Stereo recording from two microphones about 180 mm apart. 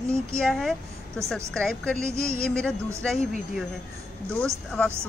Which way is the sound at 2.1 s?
15° right (ahead or behind).